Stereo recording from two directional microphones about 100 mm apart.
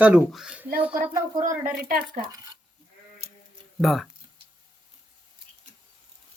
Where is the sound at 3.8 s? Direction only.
Centre (ahead or behind).